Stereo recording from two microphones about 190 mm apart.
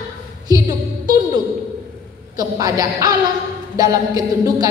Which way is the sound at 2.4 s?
20° right (ahead or behind).